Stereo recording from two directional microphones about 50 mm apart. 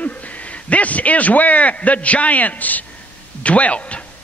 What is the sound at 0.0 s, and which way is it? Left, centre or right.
A man's voice, left.